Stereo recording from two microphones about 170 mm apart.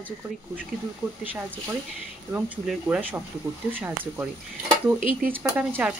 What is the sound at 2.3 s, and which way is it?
Speech, 10° right (ahead or behind).